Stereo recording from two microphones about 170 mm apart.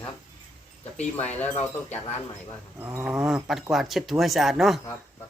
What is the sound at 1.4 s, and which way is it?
Speech, 10° left (ahead or behind).